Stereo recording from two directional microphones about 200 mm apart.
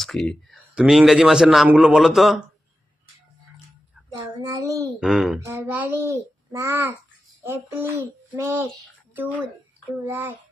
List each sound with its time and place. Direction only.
0.0 s speech: centre (ahead or behind)
4.4 s a child's voice: 15° right (ahead or behind)
4.9 s a child's voice: 5° right (ahead or behind)